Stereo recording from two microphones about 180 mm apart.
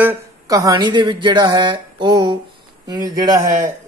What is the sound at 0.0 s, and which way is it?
Speech, 15° right (ahead or behind).